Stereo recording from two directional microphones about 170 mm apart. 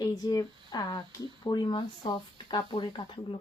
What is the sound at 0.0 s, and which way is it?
Speech, 20° left (ahead or behind).